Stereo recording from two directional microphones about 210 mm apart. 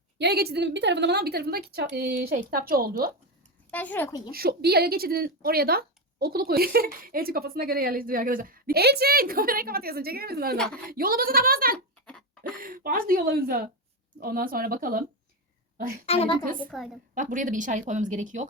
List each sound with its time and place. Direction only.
0.2 s speech: 50° right (ahead or behind)
3.7 s speech: 5° left (ahead or behind)
4.3 s speech: 45° right (ahead or behind)
12.0 s a sound: 5° left (ahead or behind)
12.4 s speech: 40° right (ahead or behind)
16.0 s a woman's voice: 30° left (ahead or behind)
16.6 s a woman's voice: centre (ahead or behind)
17.2 s speech: 40° right (ahead or behind)